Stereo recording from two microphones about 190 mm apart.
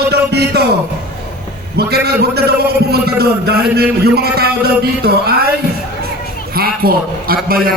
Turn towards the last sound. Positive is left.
turn(degrees=-50)  # may be behind; listen again after turning